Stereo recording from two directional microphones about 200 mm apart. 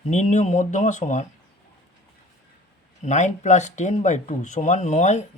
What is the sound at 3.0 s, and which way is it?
Speech, 35° left (ahead or behind).